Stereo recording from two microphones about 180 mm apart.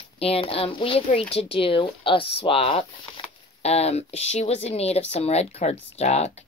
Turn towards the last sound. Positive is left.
turn(degrees=35)  # may be behind; listen again after turning